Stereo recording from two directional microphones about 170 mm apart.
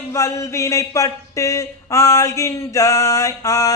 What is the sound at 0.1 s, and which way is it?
Speech, 15° left (ahead or behind).